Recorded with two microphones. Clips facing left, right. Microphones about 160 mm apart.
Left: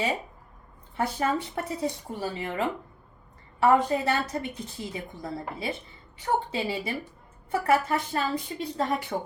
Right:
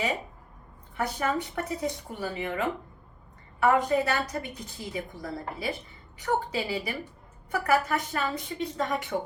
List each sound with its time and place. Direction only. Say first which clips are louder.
0.9 s a woman's voice: left 2 dB; 30° left (ahead or behind)